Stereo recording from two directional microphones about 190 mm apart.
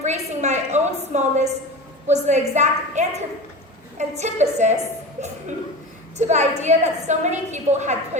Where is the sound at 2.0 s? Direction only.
35° right (ahead or behind).